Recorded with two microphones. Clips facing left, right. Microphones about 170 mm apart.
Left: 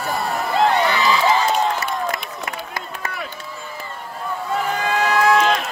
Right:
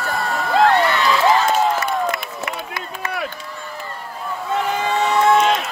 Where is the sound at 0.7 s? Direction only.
Centre (ahead or behind).